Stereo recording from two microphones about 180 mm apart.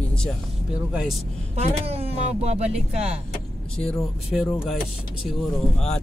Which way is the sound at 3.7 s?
Centre (ahead or behind).